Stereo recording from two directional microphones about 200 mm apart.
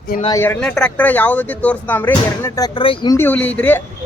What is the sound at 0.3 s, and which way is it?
Speech, 15° left (ahead or behind).